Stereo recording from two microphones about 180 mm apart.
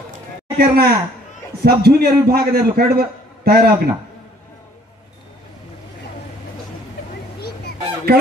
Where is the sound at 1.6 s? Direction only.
60° right (ahead or behind).